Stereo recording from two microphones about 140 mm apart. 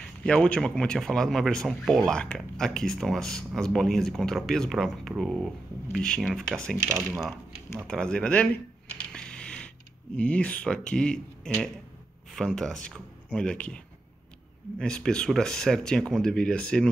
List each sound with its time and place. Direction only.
0.2 s a man's voice: 5° left (ahead or behind)
6.8 s speech: 20° right (ahead or behind)
7.1 s a man's voice: centre (ahead or behind)
7.8 s a sound: 5° left (ahead or behind)
10.1 s a man's voice: 10° left (ahead or behind)
14.8 s a man's voice: 5° left (ahead or behind)